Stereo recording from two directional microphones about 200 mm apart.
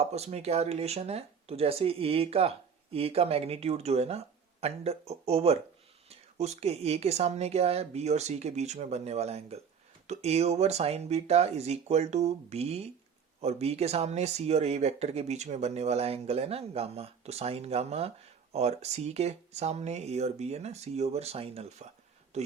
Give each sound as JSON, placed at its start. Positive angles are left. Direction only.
{"t": 0.0, "sound": "speech", "side_deg": -35}